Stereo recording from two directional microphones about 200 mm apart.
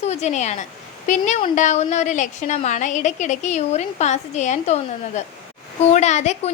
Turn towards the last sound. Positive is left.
turn(degrees=35)  # may be behind; listen again after turning